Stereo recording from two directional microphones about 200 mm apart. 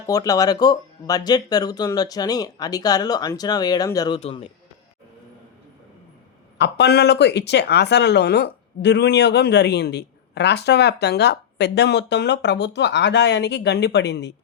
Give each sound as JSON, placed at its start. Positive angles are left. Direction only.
{"t": 0.1, "sound": "speech", "side_deg": 15}
{"t": 4.2, "sound": "speech", "side_deg": 30}
{"t": 6.6, "sound": "speech", "side_deg": 55}